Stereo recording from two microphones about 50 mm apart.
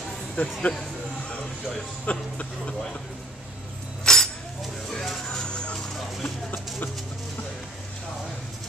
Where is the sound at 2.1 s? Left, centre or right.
Left.